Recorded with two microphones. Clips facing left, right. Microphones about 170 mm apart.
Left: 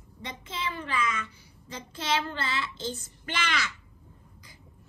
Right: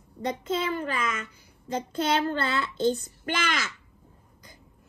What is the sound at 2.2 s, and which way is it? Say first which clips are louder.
A child's voice: right 6 dB; 50° right (ahead or behind).